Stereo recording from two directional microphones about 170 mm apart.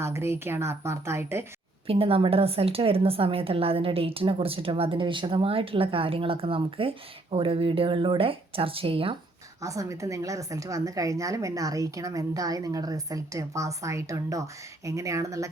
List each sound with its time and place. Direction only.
0.0 s speech: 15° right (ahead or behind)
1.9 s a woman's voice: 35° right (ahead or behind)
9.6 s a woman's voice: 20° right (ahead or behind)